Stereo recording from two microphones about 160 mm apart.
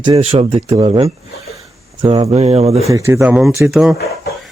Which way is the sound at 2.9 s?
20° right (ahead or behind).